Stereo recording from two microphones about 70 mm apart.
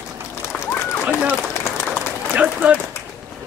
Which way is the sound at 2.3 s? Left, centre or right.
Centre.